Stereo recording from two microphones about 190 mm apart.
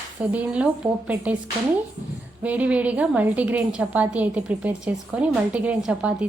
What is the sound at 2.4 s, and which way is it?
A woman's voice, 10° right (ahead or behind).